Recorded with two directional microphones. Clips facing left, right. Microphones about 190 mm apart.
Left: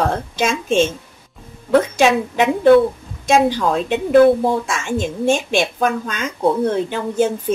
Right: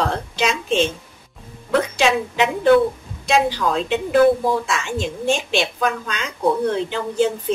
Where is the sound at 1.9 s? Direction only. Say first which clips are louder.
Left 4 dB; 50° left (ahead or behind).